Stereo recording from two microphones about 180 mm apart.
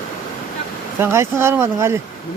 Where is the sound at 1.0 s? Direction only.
15° right (ahead or behind).